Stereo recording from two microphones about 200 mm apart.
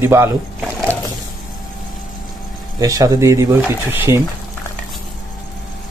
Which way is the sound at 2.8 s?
15° right (ahead or behind).